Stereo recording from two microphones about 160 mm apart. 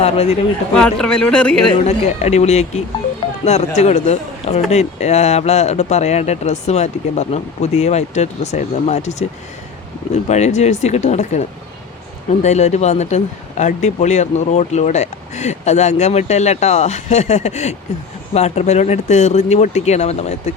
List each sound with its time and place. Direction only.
0.0 s speech: 40° left (ahead or behind)
0.8 s speech: 5° left (ahead or behind)
1.8 s speech: 45° left (ahead or behind)
10.2 s speech: 45° left (ahead or behind)